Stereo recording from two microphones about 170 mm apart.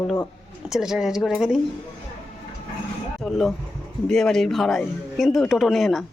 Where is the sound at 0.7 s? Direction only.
5° right (ahead or behind).